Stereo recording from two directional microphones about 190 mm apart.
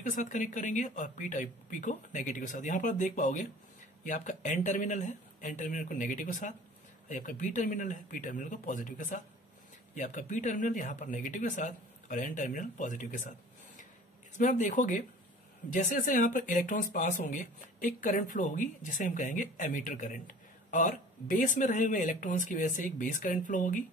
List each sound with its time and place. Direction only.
0.1 s speech: 40° left (ahead or behind)
14.3 s speech: 40° left (ahead or behind)